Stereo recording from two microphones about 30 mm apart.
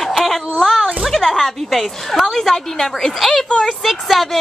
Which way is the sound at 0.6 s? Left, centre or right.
Left.